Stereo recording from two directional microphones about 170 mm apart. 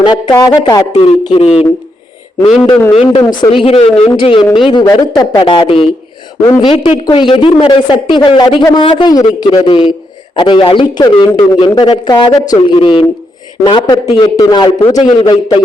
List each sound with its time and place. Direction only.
0.0 s a man's voice: 25° left (ahead or behind)
2.9 s a man's voice: 35° left (ahead or behind)
6.4 s a man's voice: 20° left (ahead or behind)
6.7 s a man's voice: 35° left (ahead or behind)